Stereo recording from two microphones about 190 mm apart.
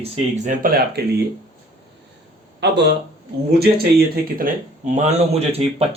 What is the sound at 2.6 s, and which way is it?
Speech, 65° right (ahead or behind).